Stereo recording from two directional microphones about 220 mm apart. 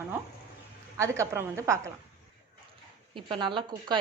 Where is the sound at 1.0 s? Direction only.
10° right (ahead or behind).